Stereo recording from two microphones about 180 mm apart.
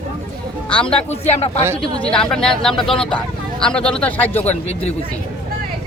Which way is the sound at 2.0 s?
5° left (ahead or behind).